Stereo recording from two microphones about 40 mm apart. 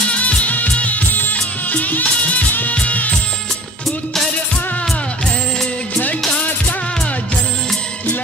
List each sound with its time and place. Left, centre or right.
0.1 s music: left
5.9 s music: left